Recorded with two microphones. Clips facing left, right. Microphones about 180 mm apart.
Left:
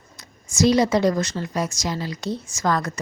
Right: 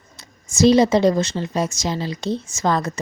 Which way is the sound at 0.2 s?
25° right (ahead or behind).